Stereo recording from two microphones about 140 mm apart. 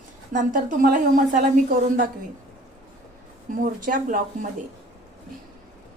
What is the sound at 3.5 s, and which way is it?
A woman's voice, 70° right (ahead or behind).